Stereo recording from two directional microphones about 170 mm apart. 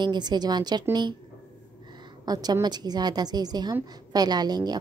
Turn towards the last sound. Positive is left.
turn(degrees=-25)  # may be behind; listen again after turning